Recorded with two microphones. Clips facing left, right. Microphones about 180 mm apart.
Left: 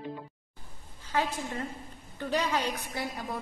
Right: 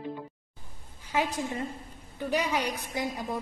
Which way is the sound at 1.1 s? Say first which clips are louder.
Right 2 dB; 15° right (ahead or behind).